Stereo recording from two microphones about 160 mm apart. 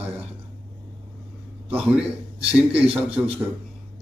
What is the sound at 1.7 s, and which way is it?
Speech, 10° right (ahead or behind).